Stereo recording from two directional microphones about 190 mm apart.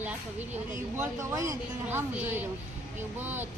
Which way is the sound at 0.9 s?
10° right (ahead or behind).